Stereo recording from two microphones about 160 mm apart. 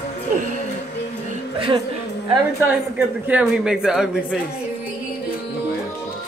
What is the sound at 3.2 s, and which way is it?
Speech, 5° right (ahead or behind).